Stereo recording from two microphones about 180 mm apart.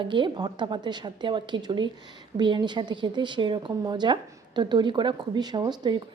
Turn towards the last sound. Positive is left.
turn(degrees=-25)  # may be behind; listen again after turning